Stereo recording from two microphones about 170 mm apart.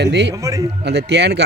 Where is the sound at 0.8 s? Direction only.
75° right (ahead or behind).